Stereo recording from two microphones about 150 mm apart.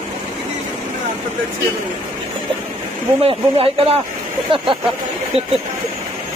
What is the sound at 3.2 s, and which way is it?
Speech, 40° right (ahead or behind).